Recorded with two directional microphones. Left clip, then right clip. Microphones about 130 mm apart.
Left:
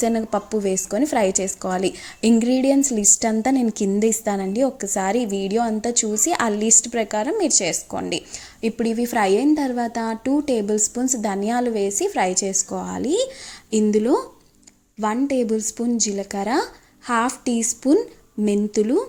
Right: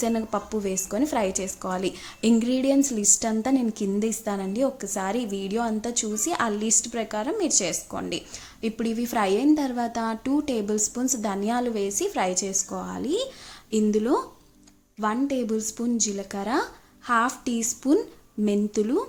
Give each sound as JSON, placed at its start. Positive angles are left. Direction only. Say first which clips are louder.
{"t": 0.0, "sound": "a woman's voice", "louder": "left 5 dB", "side_deg": 25}